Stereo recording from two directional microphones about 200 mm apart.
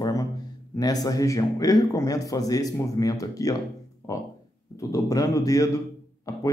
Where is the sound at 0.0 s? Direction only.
15° left (ahead or behind).